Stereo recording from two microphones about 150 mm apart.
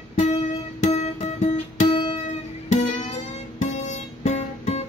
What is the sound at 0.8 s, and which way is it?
Music, 50° left (ahead or behind).